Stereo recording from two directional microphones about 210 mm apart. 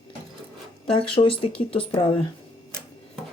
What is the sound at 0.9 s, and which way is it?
Speech, 25° left (ahead or behind).